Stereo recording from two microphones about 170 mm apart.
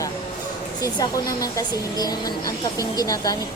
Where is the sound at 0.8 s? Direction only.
20° left (ahead or behind).